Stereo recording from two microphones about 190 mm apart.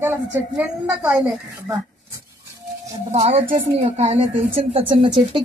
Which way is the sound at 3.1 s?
35° right (ahead or behind).